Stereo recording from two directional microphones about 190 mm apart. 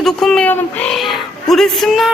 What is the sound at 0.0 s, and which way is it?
Speech, centre (ahead or behind).